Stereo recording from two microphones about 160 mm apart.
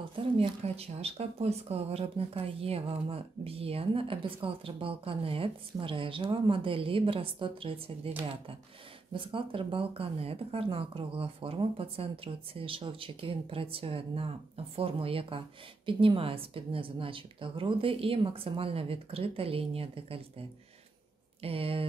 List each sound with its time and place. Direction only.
0.1 s speech: 35° right (ahead or behind)
9.1 s speech: 35° right (ahead or behind)